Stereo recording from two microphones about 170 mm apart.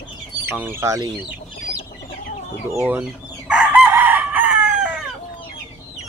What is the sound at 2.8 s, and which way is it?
Chicken, 10° right (ahead or behind).